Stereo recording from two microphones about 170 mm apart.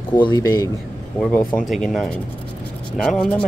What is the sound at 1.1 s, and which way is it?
Speech, 5° left (ahead or behind).